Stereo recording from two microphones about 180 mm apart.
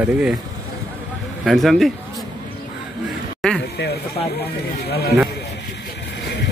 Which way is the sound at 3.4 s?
5° left (ahead or behind).